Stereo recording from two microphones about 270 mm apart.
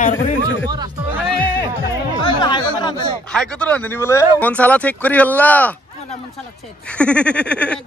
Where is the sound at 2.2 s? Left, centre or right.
Centre.